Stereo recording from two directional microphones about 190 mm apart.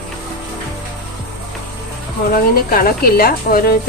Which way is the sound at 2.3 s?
50° left (ahead or behind).